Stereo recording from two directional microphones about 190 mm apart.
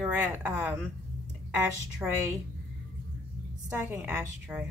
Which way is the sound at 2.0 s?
15° right (ahead or behind).